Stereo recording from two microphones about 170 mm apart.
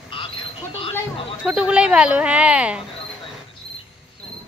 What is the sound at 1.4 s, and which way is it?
Speech, 5° right (ahead or behind).